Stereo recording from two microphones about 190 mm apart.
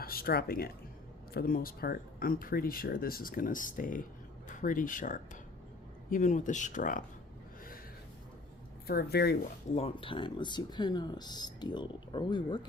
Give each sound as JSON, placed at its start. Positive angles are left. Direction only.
{"t": 0.0, "sound": "speech", "side_deg": 50}
{"t": 8.9, "sound": "speech", "side_deg": 55}
{"t": 9.7, "sound": "speech", "side_deg": 30}